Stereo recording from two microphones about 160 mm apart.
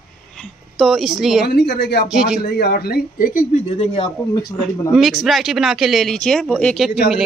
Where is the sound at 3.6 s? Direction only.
40° left (ahead or behind).